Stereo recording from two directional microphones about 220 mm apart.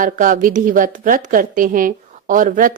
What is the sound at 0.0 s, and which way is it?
A woman's voice, 35° right (ahead or behind).